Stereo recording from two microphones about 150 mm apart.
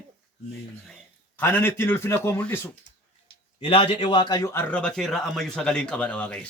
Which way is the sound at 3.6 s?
35° left (ahead or behind).